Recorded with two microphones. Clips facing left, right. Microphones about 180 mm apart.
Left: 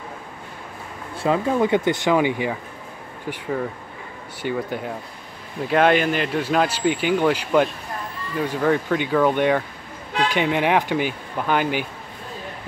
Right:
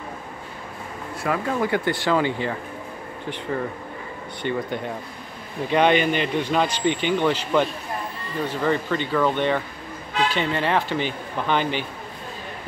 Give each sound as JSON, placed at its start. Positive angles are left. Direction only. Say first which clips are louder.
{"t": 1.2, "sound": "speech", "louder": "left 4 dB", "side_deg": 20}
{"t": 4.4, "sound": "speech", "louder": "left 1 dB", "side_deg": 5}